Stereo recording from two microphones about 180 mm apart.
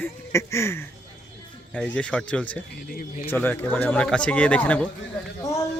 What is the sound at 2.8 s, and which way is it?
Speech, 55° left (ahead or behind).